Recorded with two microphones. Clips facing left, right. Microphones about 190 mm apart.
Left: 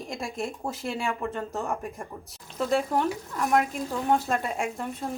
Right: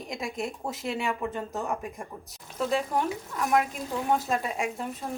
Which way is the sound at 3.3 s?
5° right (ahead or behind).